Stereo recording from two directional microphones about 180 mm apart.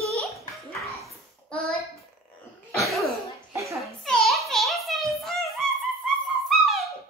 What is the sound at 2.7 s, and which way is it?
Cough, centre (ahead or behind).